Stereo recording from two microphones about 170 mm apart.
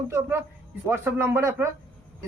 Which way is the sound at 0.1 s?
15° right (ahead or behind).